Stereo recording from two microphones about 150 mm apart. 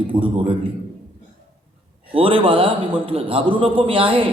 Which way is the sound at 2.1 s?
35° right (ahead or behind).